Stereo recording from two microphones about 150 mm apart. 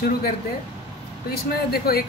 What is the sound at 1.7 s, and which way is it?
Speech, 90° left.